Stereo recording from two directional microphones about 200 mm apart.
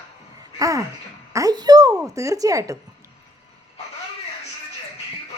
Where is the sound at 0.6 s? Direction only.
15° right (ahead or behind).